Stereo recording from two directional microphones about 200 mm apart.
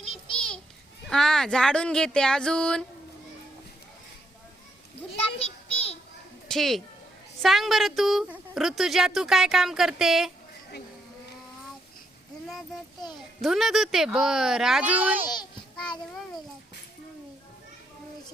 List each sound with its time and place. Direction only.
1.1 s speech: 5° left (ahead or behind)
5.4 s child singing: 30° left (ahead or behind)
6.5 s speech: centre (ahead or behind)
12.5 s speech: centre (ahead or behind)
15.7 s a child's voice: 5° left (ahead or behind)